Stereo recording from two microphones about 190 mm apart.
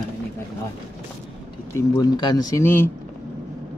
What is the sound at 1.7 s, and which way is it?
Speech, 20° left (ahead or behind).